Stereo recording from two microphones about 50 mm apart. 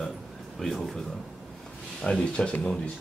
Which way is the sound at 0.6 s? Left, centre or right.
Centre.